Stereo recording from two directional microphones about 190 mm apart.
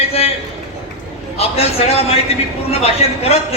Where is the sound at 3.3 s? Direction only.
35° left (ahead or behind).